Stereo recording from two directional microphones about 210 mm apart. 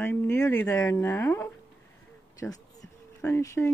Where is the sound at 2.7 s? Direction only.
15° left (ahead or behind).